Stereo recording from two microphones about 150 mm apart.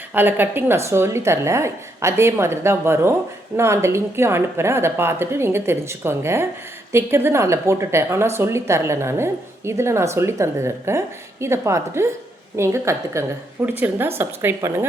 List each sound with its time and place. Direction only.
0.1 s a woman's voice: 15° right (ahead or behind)